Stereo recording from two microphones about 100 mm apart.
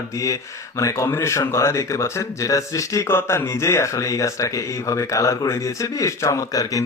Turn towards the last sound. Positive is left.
turn(degrees=35)  # may be behind; listen again after turning